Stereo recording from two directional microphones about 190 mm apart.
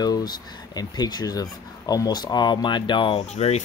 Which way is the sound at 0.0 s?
20° left (ahead or behind).